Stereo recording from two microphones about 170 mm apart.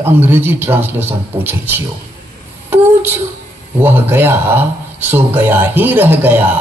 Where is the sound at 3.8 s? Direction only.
10° right (ahead or behind).